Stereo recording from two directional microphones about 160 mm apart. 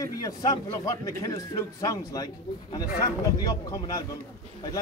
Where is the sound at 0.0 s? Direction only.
20° left (ahead or behind).